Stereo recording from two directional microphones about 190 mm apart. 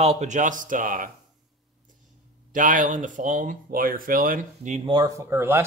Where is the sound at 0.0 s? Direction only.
35° right (ahead or behind).